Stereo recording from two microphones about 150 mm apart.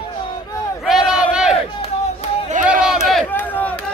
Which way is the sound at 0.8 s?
5° right (ahead or behind).